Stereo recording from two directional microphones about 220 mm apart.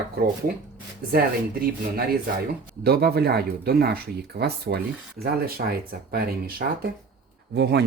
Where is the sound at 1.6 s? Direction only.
45° right (ahead or behind).